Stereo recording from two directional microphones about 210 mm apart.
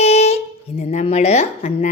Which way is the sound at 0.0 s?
30° left (ahead or behind).